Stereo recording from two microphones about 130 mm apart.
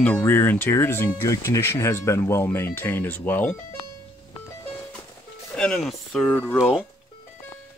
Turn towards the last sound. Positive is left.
turn(degrees=15)  # may be behind; listen again after turning